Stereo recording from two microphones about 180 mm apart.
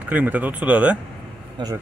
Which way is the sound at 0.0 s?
10° right (ahead or behind).